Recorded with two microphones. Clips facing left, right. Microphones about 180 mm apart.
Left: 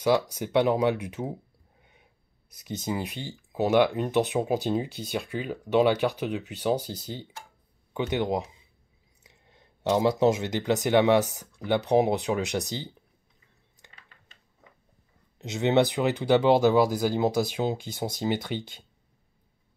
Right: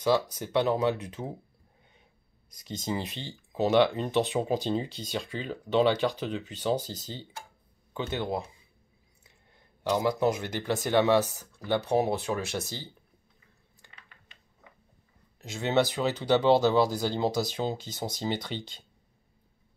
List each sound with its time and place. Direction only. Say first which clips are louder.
0.0 s speech: left 2 dB; 10° left (ahead or behind)
2.6 s speech: left 2 dB; 10° left (ahead or behind)
15.3 s speech: left 4 dB; 20° left (ahead or behind)